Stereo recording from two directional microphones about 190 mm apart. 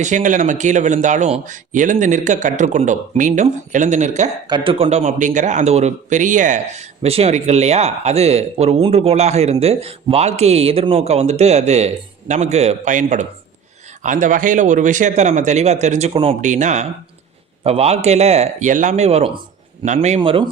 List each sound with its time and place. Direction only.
0.0 s a man's voice: 40° right (ahead or behind)
4.4 s a man's voice: 25° right (ahead or behind)